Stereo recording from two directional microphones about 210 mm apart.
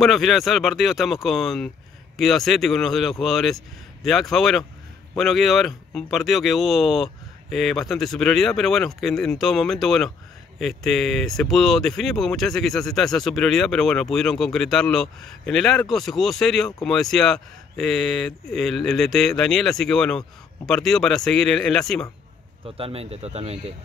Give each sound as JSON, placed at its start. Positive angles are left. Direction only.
{"t": 0.0, "sound": "speech", "side_deg": 0}
{"t": 22.7, "sound": "speech", "side_deg": -25}